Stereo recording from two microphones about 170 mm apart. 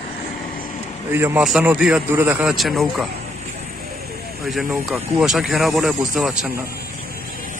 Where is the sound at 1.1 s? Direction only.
15° right (ahead or behind).